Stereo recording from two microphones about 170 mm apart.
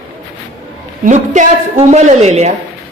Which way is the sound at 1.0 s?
45° right (ahead or behind).